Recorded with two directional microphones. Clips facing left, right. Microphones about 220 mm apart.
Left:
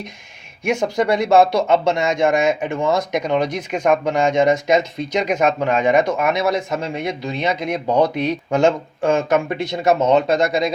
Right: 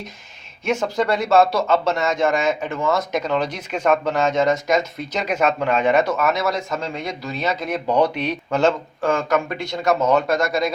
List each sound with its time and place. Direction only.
0.6 s speech: 15° left (ahead or behind)